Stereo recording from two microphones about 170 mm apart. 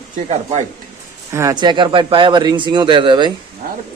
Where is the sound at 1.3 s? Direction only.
15° right (ahead or behind).